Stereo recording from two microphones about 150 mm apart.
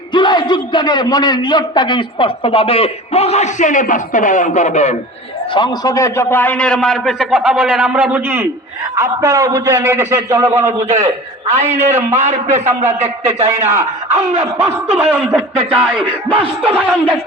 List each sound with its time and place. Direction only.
0.1 s a man's voice: 30° left (ahead or behind); by 4.9 s 50° left (ahead or behind)
5.5 s a man's voice: 25° left (ahead or behind); by 10.7 s 20° right (ahead or behind)
10.7 s a man's voice: 50° right (ahead or behind)
14.6 s a man's voice: 10° right (ahead or behind)
15.5 s speech: 15° right (ahead or behind)